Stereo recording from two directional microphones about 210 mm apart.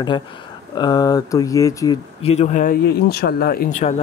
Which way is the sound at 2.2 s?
30° left (ahead or behind).